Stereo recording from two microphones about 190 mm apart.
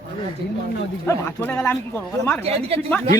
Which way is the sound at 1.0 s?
10° left (ahead or behind).